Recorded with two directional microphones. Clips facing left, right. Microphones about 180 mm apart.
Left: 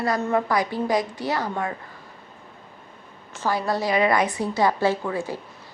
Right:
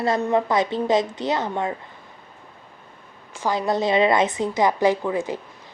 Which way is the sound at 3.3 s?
15° right (ahead or behind).